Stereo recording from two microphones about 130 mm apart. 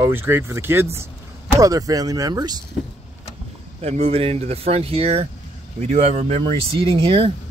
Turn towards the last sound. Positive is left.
turn(degrees=-40)  # may be behind; listen again after turning